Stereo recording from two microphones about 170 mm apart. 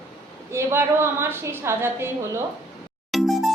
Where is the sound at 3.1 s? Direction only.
Centre (ahead or behind).